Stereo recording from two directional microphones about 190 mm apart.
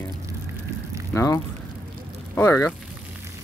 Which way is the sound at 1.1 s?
15° left (ahead or behind).